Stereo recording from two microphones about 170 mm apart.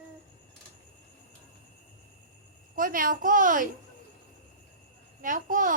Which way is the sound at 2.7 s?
55° right (ahead or behind).